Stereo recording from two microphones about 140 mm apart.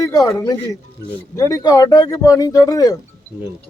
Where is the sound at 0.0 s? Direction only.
25° left (ahead or behind).